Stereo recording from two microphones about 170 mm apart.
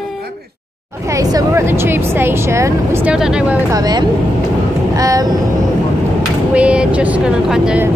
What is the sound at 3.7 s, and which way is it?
Speech, 20° right (ahead or behind).